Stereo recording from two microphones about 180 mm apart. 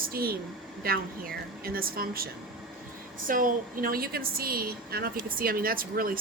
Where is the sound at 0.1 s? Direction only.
55° right (ahead or behind).